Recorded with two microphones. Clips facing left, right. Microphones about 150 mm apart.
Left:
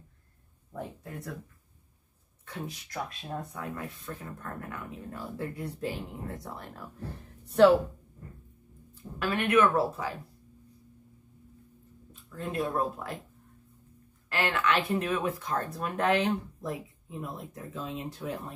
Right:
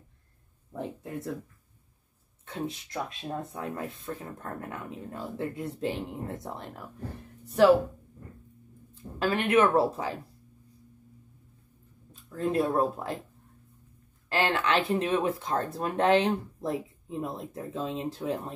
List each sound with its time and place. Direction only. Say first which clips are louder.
0.7 s speech: right 4 dB; 20° right (ahead or behind)
2.4 s speech: right 5 dB; 25° right (ahead or behind)
7.4 s speech: even; 5° right (ahead or behind)
8.9 s speech: right 3 dB; 25° right (ahead or behind)
12.1 s speech: right 7 dB; 35° right (ahead or behind)
14.3 s speech: right 2 dB; 30° right (ahead or behind)